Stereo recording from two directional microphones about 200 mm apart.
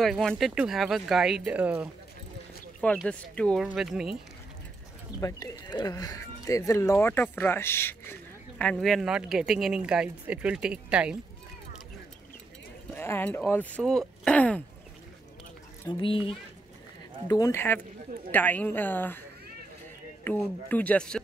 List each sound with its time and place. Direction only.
0.0 s speech: centre (ahead or behind)
2.8 s speech: 5° left (ahead or behind)
5.2 s speech: 20° left (ahead or behind); by 11.1 s 5° right (ahead or behind)
12.9 s speech: 10° left (ahead or behind)
15.8 s speech: 25° left (ahead or behind)
17.3 s speech: 15° left (ahead or behind)
20.2 s speech: 10° left (ahead or behind)